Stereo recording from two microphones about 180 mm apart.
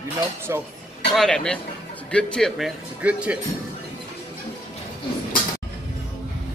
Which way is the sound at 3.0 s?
5° right (ahead or behind).